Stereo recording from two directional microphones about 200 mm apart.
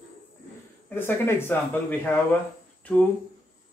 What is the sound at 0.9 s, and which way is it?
Speech, 10° left (ahead or behind).